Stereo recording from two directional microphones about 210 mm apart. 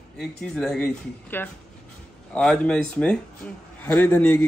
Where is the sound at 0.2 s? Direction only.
5° left (ahead or behind).